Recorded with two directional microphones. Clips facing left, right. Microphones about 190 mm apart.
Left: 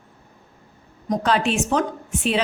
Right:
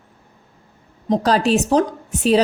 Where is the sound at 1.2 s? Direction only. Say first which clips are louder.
Right 4 dB; 40° right (ahead or behind).